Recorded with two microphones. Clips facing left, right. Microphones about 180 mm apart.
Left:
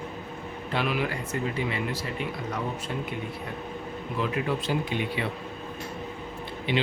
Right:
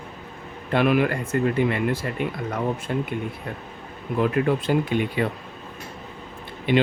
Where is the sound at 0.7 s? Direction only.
55° right (ahead or behind).